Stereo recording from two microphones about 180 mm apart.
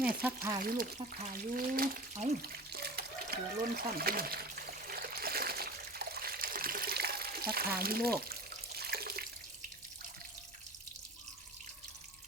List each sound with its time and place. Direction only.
0.6 s speech: 50° right (ahead or behind)
4.9 s water: 55° right (ahead or behind)